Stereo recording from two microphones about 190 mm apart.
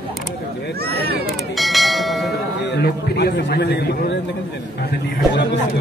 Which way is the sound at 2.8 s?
60° left (ahead or behind).